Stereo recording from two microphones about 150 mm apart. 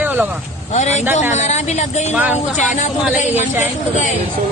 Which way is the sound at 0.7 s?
50° left (ahead or behind).